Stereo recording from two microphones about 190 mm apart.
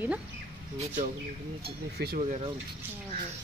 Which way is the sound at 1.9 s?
55° right (ahead or behind).